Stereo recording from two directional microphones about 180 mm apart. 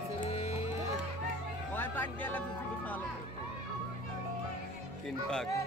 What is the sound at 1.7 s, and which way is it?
Music, 10° left (ahead or behind).